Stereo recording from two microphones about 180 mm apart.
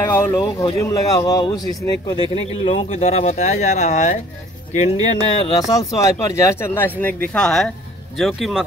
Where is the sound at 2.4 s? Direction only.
30° left (ahead or behind).